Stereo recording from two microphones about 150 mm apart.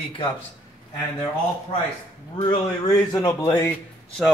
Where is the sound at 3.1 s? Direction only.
25° left (ahead or behind).